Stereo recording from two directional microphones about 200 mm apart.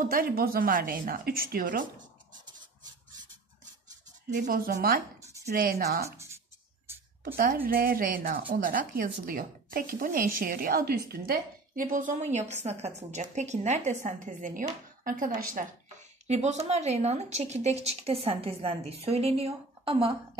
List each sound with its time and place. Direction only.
0.0 s speech: 45° right (ahead or behind)
4.3 s speech: 45° right (ahead or behind)
6.0 s speech: 15° right (ahead or behind)
7.3 s a woman's voice: 45° right (ahead or behind); by 20.1 s 25° right (ahead or behind)